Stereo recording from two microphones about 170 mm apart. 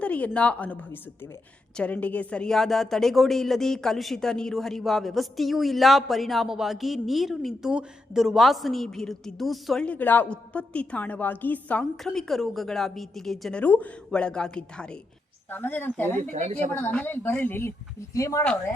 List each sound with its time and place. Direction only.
0.0 s a woman's voice: 5° left (ahead or behind)
16.3 s a woman's voice: 40° right (ahead or behind)
16.8 s speech: 10° left (ahead or behind)